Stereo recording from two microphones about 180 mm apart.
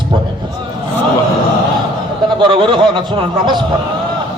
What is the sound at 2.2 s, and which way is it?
A man's voice, 25° right (ahead or behind).